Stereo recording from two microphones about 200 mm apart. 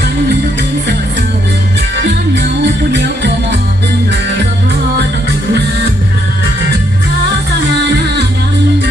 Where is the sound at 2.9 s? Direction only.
60° right (ahead or behind).